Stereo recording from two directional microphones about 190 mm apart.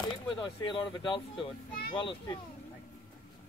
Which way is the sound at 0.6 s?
25° left (ahead or behind).